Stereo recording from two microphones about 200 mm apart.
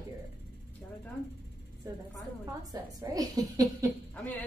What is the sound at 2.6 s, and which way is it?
A woman's voice, 20° right (ahead or behind).